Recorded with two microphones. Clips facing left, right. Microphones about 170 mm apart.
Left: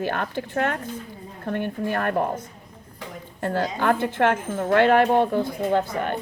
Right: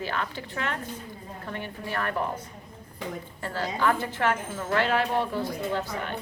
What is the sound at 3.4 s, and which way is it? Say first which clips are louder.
A woman's voice: left 4 dB; 55° left (ahead or behind).